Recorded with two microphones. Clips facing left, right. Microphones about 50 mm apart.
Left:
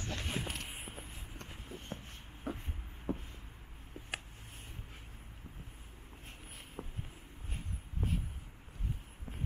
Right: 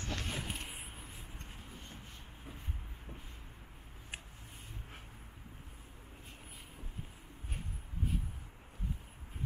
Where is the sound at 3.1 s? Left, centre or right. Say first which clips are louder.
Left 15 dB; left.